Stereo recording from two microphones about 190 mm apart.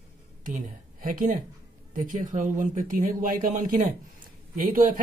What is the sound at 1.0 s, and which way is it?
Speech, 45° right (ahead or behind).